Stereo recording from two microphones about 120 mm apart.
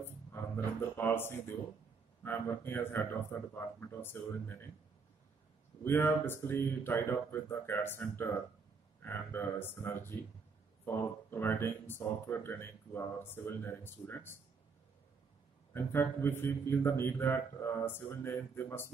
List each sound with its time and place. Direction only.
0.0 s a man's voice: 20° left (ahead or behind)
5.9 s speech: 20° left (ahead or behind)
15.7 s speech: 20° left (ahead or behind)